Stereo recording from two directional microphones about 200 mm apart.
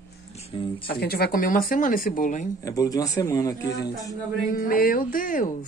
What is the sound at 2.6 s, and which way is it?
Speech, 15° left (ahead or behind).